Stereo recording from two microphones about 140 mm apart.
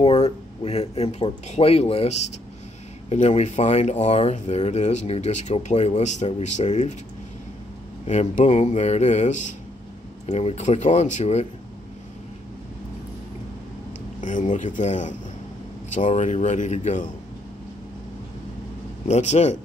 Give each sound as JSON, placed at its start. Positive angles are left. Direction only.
{"t": 0.0, "sound": "speech", "side_deg": 45}
{"t": 8.1, "sound": "speech", "side_deg": 55}
{"t": 14.2, "sound": "speech", "side_deg": 60}
{"t": 19.0, "sound": "speech", "side_deg": 55}